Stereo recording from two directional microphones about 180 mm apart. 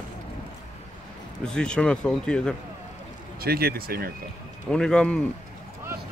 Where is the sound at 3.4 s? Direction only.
60° right (ahead or behind).